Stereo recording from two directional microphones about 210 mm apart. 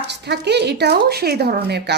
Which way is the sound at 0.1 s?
55° right (ahead or behind).